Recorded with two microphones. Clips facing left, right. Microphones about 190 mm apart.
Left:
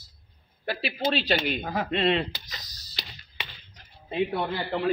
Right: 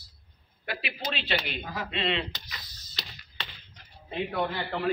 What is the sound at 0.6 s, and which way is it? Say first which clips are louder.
Speech: left 7 dB; 35° left (ahead or behind).